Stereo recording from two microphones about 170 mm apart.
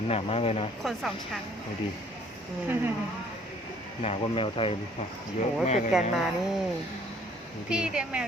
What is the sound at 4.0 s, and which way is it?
Speech, 35° left (ahead or behind).